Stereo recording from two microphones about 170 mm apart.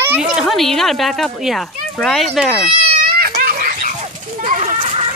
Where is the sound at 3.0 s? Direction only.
65° right (ahead or behind).